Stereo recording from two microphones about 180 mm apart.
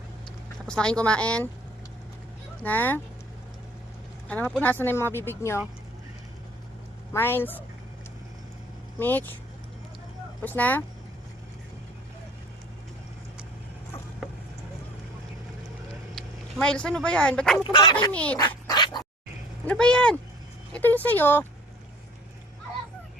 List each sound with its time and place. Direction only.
0.6 s speech: 5° left (ahead or behind)
2.6 s speech: 10° left (ahead or behind)
4.3 s speech: 10° left (ahead or behind)
7.1 s speech: 10° left (ahead or behind)
9.0 s speech: 10° left (ahead or behind)
10.4 s speech: 10° left (ahead or behind)
16.1 s speech: 5° left (ahead or behind)
17.7 s speech: 25° left (ahead or behind)
18.1 s speech: 5° left (ahead or behind)
18.3 s dog: 20° left (ahead or behind)
19.6 s speech: 5° left (ahead or behind)